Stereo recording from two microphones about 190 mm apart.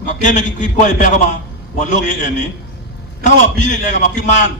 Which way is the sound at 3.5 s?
40° left (ahead or behind).